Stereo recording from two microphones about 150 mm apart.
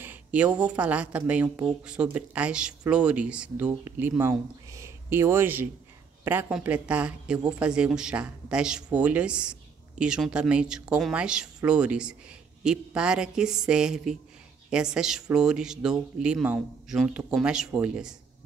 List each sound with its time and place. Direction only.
0.0 s speech: 10° right (ahead or behind)